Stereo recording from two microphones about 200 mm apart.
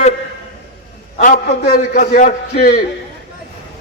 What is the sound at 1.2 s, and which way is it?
A man's voice, 40° left (ahead or behind).